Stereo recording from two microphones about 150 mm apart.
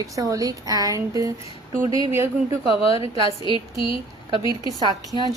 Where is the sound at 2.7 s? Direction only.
40° left (ahead or behind).